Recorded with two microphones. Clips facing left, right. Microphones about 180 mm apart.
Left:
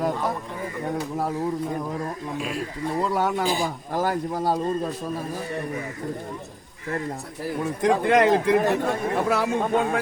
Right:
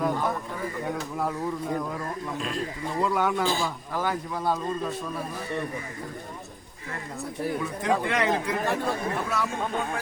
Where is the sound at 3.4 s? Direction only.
15° left (ahead or behind).